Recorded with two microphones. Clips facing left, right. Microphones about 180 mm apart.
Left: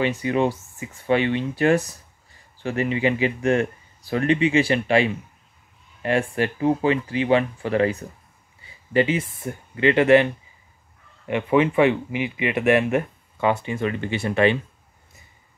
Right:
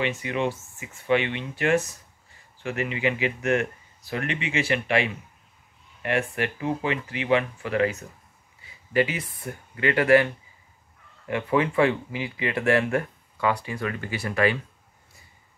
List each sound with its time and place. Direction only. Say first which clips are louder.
0.0 s speech: left 5 dB; 35° left (ahead or behind)